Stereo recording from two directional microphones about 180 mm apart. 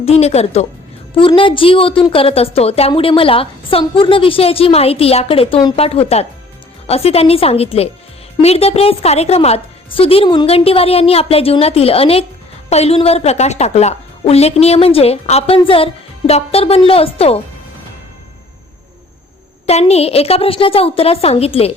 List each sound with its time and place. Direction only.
0.0 s a woman's voice: 35° left (ahead or behind)
19.6 s a woman's voice: 35° left (ahead or behind)